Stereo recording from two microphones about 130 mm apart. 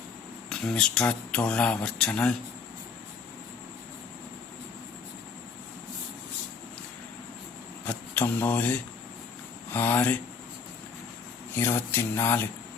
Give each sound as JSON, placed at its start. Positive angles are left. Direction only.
{"t": 0.5, "sound": "speech", "side_deg": 5}
{"t": 7.9, "sound": "speech", "side_deg": 15}
{"t": 11.5, "sound": "speech", "side_deg": 15}